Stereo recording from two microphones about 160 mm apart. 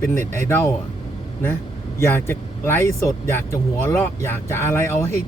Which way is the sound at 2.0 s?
15° left (ahead or behind).